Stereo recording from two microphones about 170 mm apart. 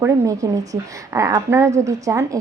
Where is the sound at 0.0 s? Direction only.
20° right (ahead or behind).